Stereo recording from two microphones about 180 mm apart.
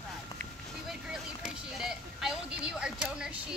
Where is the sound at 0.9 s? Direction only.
Centre (ahead or behind).